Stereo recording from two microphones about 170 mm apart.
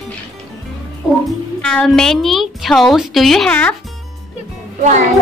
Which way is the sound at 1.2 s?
5° left (ahead or behind).